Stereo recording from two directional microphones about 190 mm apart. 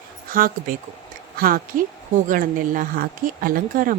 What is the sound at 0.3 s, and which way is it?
Speech, 50° right (ahead or behind).